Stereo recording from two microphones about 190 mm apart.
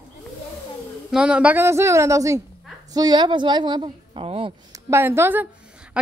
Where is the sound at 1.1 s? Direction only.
5° right (ahead or behind); by 4.5 s 30° right (ahead or behind).